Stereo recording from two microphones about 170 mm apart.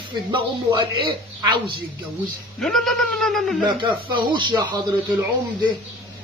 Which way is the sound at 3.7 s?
30° right (ahead or behind).